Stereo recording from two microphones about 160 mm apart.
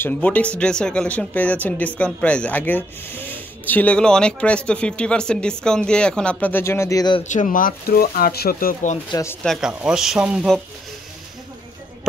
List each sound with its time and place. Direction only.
0.0 s speech: 10° left (ahead or behind); by 7.2 s 25° left (ahead or behind)
7.2 s speech: 55° left (ahead or behind)
9.1 s speech: 15° left (ahead or behind)
9.4 s speech: centre (ahead or behind)